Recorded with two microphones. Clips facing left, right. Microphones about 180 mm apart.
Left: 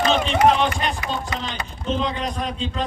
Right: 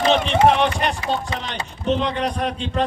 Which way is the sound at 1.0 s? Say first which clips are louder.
Right 3 dB; 25° right (ahead or behind).